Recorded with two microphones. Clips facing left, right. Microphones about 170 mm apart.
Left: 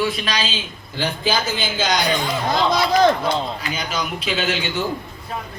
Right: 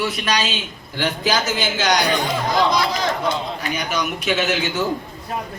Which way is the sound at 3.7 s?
70° right (ahead or behind).